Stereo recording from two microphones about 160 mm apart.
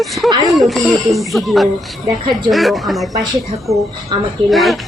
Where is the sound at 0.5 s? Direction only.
Centre (ahead or behind).